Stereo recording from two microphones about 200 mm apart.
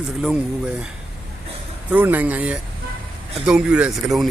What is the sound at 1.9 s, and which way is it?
Speech, 10° right (ahead or behind).